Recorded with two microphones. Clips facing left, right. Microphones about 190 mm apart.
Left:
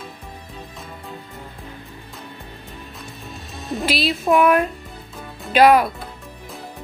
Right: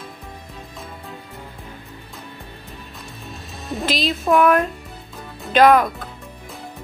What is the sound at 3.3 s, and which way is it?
Music, centre (ahead or behind).